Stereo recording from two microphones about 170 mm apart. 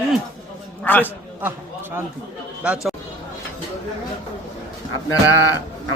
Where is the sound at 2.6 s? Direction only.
5° right (ahead or behind).